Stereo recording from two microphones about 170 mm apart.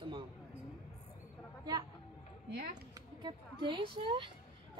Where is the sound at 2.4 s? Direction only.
65° right (ahead or behind).